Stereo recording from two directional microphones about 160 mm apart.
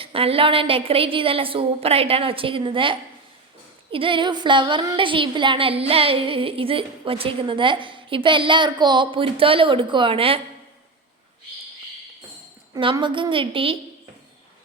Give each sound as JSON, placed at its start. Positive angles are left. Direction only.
{"t": 0.0, "sound": "a woman's voice", "side_deg": -35}
{"t": 12.7, "sound": "a woman's voice", "side_deg": -30}